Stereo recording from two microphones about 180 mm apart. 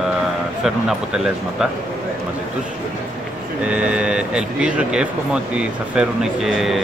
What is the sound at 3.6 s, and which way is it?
Speech, 5° right (ahead or behind).